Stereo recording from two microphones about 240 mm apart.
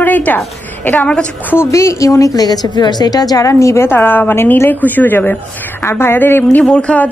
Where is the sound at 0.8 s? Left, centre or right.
Centre.